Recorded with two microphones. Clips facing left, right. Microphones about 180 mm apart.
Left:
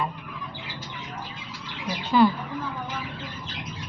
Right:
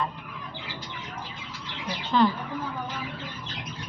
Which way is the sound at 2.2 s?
5° left (ahead or behind).